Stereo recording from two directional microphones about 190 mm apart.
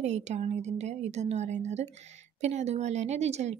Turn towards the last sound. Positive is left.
turn(degrees=-35)  # may be behind; listen again after turning